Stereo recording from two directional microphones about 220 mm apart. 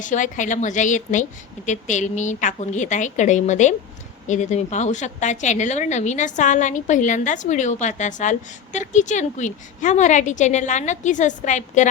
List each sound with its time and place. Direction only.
0.0 s a woman's voice: 35° left (ahead or behind)